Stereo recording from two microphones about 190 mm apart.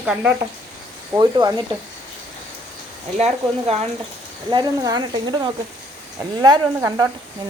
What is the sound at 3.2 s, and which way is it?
Speech, 35° right (ahead or behind).